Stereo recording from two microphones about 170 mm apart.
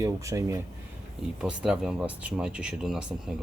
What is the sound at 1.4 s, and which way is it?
Speech, 5° right (ahead or behind).